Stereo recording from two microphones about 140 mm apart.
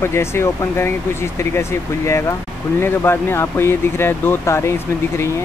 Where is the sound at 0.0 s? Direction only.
20° left (ahead or behind).